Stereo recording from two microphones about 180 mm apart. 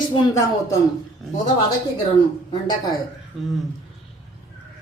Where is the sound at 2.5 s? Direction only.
20° left (ahead or behind).